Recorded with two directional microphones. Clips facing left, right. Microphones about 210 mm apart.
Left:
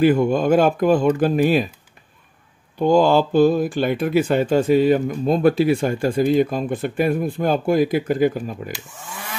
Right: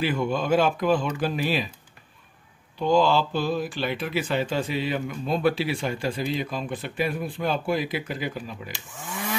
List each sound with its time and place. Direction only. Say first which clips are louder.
0.0 s speech: left 9 dB; 50° left (ahead or behind)
2.8 s speech: left 6 dB; 50° left (ahead or behind)
9.1 s chainsaw: right 4 dB; centre (ahead or behind)